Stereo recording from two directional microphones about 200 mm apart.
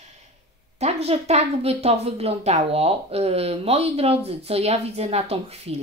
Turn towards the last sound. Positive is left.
turn(degrees=-30)  # may be behind; listen again after turning